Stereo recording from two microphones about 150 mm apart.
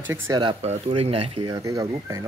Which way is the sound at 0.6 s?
40° right (ahead or behind).